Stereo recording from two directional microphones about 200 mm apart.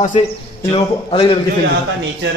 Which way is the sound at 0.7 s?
25° left (ahead or behind).